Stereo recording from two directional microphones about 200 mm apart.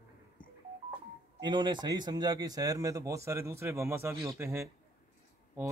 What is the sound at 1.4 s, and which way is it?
Speech, 20° right (ahead or behind).